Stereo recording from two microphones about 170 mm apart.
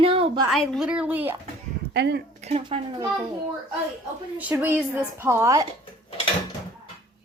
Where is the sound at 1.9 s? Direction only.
85° right.